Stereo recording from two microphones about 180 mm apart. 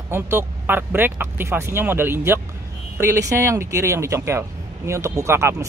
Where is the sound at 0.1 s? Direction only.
15° right (ahead or behind).